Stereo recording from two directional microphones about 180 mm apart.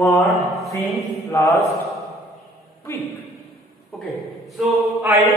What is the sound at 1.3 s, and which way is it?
Mantra, 15° left (ahead or behind).